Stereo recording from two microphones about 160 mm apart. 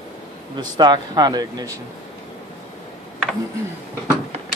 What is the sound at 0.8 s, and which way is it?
Speech, 25° right (ahead or behind).